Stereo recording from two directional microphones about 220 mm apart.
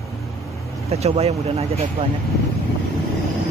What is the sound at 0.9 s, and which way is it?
Speech, 30° right (ahead or behind).